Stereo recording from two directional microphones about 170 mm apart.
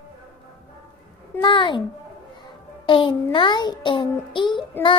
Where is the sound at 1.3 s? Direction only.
25° left (ahead or behind).